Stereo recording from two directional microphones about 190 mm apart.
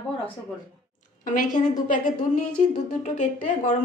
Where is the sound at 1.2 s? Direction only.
40° left (ahead or behind).